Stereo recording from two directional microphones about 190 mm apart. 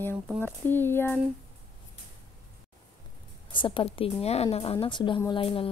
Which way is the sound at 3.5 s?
25° left (ahead or behind).